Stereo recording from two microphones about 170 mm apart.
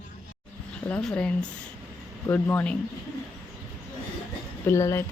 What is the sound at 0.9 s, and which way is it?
Speech, 5° left (ahead or behind).